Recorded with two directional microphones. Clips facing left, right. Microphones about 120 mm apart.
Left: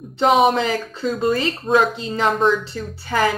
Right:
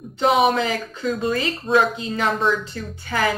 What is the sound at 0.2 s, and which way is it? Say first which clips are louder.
Speech: left 2 dB; 30° left (ahead or behind).